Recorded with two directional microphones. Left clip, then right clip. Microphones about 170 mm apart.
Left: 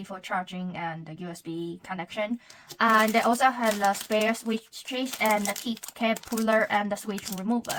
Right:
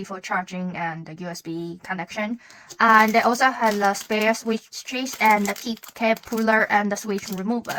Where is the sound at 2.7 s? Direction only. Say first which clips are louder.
Right 6 dB; 40° right (ahead or behind).